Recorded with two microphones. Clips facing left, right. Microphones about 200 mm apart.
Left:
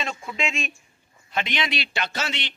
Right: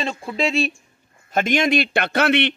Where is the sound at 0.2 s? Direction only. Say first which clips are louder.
Right 8 dB; 35° right (ahead or behind).